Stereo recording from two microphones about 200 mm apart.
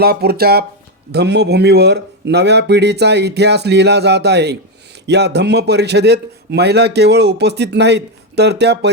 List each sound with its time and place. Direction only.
0.0 s a man's voice: 50° right (ahead or behind)